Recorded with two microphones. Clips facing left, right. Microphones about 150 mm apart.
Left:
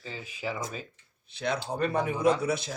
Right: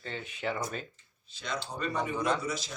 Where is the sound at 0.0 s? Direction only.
5° left (ahead or behind).